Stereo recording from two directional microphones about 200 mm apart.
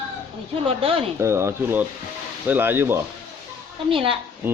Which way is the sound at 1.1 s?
15° right (ahead or behind).